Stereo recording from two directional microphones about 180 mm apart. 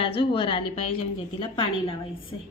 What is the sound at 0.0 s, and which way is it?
A woman's voice, 30° left (ahead or behind).